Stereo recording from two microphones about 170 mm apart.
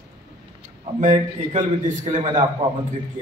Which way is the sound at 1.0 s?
45° right (ahead or behind).